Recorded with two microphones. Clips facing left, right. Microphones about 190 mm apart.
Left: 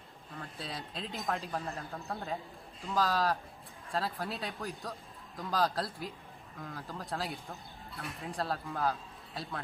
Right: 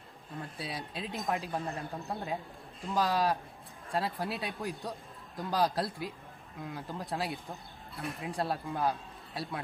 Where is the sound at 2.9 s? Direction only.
20° right (ahead or behind).